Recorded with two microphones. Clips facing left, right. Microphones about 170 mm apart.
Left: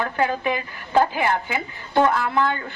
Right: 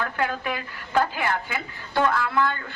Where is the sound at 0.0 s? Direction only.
20° left (ahead or behind).